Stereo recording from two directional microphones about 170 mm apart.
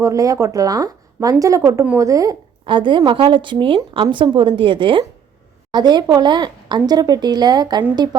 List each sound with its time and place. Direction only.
0.0 s a woman's voice: 20° right (ahead or behind)